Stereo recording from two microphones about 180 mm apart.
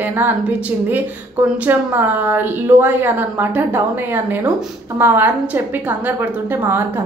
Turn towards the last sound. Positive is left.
turn(degrees=-10)  # may be behind; listen again after turning